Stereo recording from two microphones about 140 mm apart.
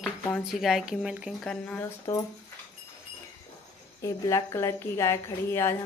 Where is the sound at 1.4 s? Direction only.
10° left (ahead or behind).